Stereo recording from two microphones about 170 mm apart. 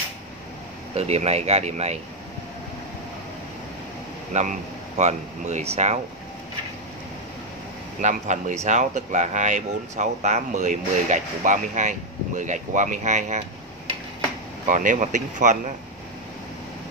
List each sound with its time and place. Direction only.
0.9 s speech: 40° right (ahead or behind)
4.3 s speech: 45° right (ahead or behind)
8.0 s speech: 45° right (ahead or behind)
14.7 s speech: 50° right (ahead or behind)